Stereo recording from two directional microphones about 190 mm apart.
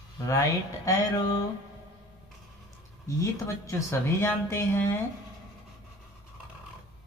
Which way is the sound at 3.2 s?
15° left (ahead or behind).